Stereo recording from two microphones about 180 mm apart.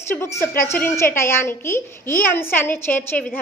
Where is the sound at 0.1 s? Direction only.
15° left (ahead or behind).